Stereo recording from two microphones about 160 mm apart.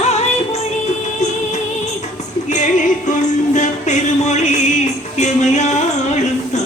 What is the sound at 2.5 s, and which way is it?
Music, 50° left (ahead or behind).